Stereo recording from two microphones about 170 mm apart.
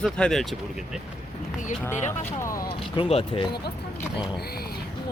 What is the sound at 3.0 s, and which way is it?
Speech, 35° left (ahead or behind).